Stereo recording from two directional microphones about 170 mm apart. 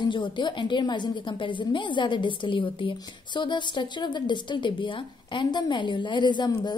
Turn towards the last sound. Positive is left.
turn(degrees=25)  # may be behind; listen again after turning